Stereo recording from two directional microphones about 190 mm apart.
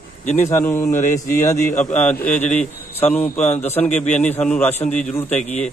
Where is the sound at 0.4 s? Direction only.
10° left (ahead or behind).